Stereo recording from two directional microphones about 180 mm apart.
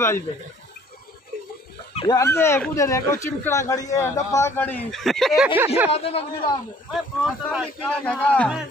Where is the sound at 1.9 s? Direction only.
30° left (ahead or behind).